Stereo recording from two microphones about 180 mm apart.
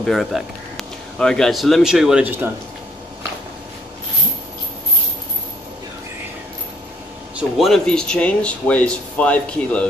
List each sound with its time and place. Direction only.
0.0 s speech: centre (ahead or behind)
7.3 s speech: centre (ahead or behind)